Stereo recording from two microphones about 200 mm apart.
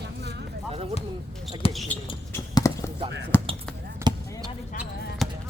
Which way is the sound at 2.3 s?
15° left (ahead or behind).